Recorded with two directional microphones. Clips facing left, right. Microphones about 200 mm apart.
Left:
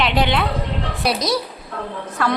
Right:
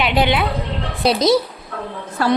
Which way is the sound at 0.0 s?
5° right (ahead or behind).